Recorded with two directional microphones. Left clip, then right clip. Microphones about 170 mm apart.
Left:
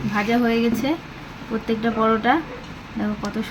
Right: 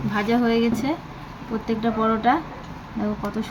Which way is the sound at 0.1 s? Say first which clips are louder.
Left 1 dB; 10° left (ahead or behind).